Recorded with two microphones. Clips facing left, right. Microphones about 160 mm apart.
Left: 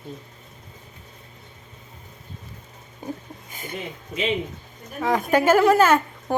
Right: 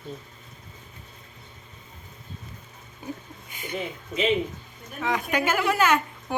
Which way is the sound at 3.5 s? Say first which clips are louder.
Even; 45° left (ahead or behind).